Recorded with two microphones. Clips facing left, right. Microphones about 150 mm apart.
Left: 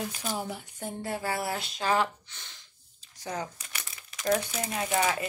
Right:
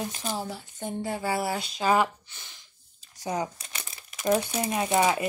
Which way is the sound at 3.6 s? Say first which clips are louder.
Right 2 dB; 25° right (ahead or behind).